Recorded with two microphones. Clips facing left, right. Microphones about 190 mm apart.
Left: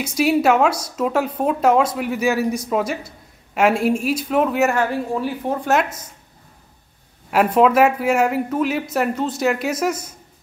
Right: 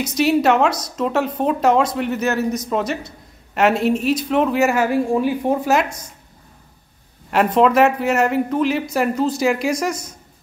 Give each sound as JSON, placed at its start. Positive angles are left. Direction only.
{"t": 0.0, "sound": "a woman's voice", "side_deg": 5}
{"t": 5.1, "sound": "a woman's voice", "side_deg": -15}
{"t": 5.7, "sound": "speech", "side_deg": 5}
{"t": 7.2, "sound": "speech", "side_deg": 5}